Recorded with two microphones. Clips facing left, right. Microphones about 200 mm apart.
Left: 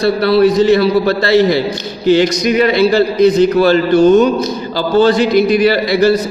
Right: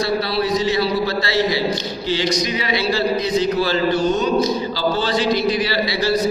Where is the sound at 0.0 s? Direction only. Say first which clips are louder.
Left 10 dB; 55° left (ahead or behind).